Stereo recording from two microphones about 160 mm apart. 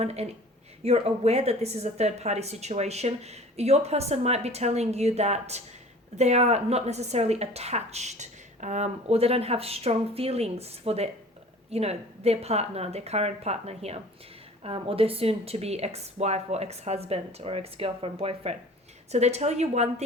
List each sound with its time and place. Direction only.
0.0 s a woman's voice: 40° right (ahead or behind)